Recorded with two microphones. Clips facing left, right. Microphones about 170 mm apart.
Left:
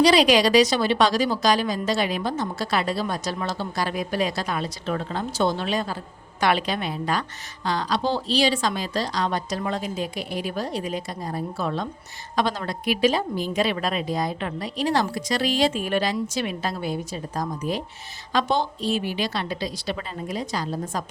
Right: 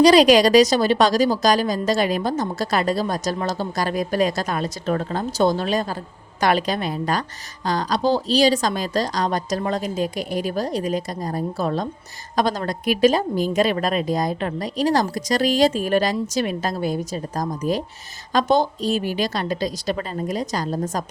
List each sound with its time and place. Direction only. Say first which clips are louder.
0.0 s a woman's voice: right 5 dB; 45° right (ahead or behind)